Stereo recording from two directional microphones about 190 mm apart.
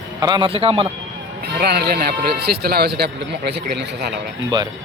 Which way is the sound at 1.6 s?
55° right (ahead or behind).